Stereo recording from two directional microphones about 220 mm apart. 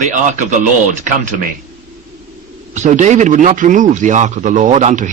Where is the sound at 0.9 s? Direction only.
35° right (ahead or behind).